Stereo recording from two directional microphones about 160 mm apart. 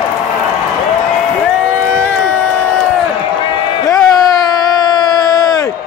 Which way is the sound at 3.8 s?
20° left (ahead or behind).